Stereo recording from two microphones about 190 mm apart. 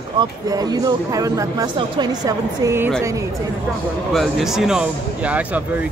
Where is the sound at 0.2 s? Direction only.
20° right (ahead or behind).